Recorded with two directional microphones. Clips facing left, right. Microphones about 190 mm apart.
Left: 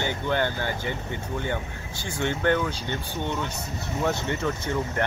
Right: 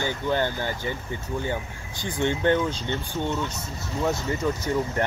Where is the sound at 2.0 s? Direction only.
15° right (ahead or behind).